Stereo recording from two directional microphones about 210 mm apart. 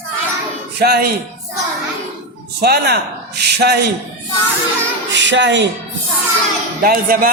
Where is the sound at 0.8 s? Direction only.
50° right (ahead or behind).